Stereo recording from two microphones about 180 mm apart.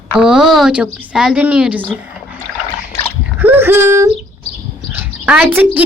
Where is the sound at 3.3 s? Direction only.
10° right (ahead or behind).